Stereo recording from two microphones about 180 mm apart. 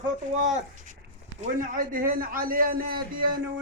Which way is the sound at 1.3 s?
45° right (ahead or behind).